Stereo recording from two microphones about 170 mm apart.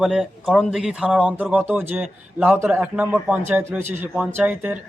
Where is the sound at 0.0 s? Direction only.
Centre (ahead or behind).